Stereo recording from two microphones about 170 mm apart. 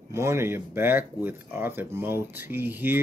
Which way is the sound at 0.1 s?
15° right (ahead or behind).